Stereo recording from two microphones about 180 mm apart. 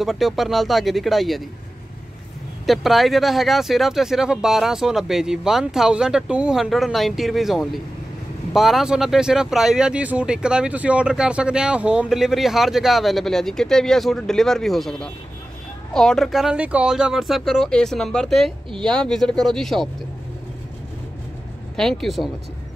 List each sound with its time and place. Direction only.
0.0 s speech: centre (ahead or behind)
2.6 s speech: centre (ahead or behind)
21.7 s speech: centre (ahead or behind)